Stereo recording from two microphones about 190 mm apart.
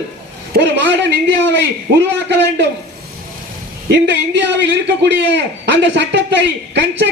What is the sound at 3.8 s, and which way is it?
A man's voice, 65° right (ahead or behind).